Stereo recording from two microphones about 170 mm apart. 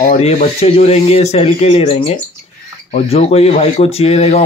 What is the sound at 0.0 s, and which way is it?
A man's voice, 45° left (ahead or behind).